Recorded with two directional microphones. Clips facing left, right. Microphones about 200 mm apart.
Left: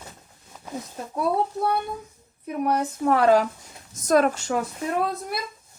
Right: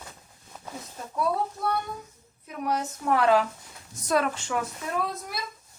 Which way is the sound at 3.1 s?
40° left (ahead or behind).